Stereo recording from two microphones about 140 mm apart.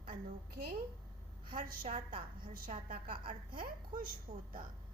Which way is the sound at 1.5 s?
90° right.